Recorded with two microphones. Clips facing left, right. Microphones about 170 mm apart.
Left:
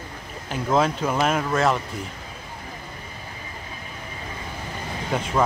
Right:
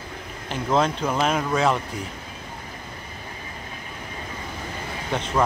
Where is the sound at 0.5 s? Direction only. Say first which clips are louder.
Left 1 dB; 5° left (ahead or behind).